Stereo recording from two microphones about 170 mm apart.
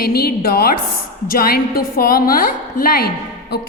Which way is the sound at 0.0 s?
65° left (ahead or behind).